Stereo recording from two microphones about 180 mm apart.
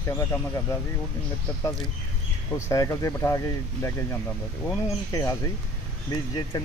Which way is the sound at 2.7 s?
15° left (ahead or behind).